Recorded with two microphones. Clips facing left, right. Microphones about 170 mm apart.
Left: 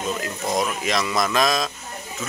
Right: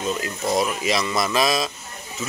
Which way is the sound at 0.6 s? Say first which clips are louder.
Right 1 dB; 5° right (ahead or behind).